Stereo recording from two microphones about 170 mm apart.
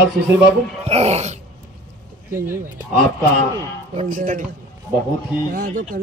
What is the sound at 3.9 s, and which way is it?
Speech, 45° right (ahead or behind).